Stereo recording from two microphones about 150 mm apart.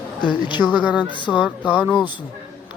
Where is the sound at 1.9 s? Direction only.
30° left (ahead or behind).